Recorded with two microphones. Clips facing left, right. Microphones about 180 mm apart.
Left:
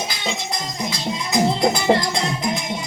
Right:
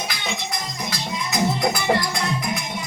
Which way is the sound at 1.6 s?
25° left (ahead or behind).